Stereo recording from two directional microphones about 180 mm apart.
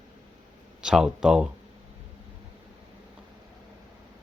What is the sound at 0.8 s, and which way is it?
Speech, 5° right (ahead or behind).